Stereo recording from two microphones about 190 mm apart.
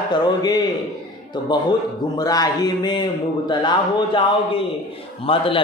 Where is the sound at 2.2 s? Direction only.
20° left (ahead or behind).